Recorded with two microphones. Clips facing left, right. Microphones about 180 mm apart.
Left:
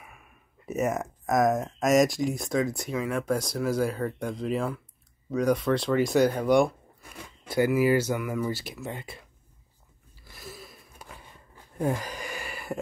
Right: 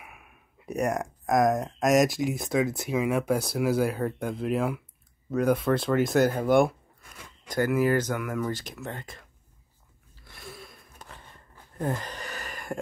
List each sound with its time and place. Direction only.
0.0 s speech: 5° right (ahead or behind)
7.4 s speech: 10° left (ahead or behind)
10.1 s a sound: centre (ahead or behind)